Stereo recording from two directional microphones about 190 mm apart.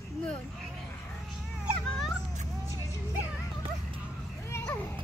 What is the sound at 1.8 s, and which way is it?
Dog, 5° left (ahead or behind).